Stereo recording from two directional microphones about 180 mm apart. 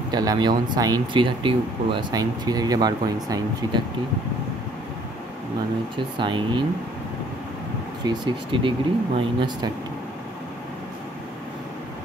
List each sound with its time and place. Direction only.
0.1 s speech: 20° right (ahead or behind)
5.9 s speech: 25° right (ahead or behind)
8.0 s speech: 25° right (ahead or behind)